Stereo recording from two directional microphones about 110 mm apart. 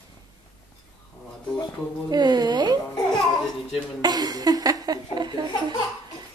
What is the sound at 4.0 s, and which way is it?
Speech, 35° right (ahead or behind).